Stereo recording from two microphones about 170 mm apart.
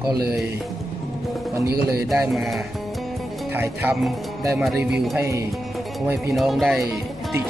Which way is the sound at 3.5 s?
10° right (ahead or behind).